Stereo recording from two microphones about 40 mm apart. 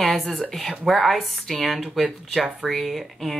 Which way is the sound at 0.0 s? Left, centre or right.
Centre.